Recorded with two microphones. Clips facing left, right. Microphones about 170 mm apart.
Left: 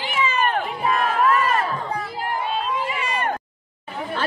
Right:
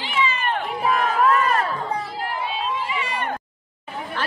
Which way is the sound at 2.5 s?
50° left (ahead or behind).